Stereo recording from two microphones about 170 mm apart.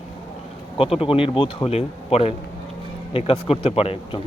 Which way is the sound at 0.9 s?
30° left (ahead or behind).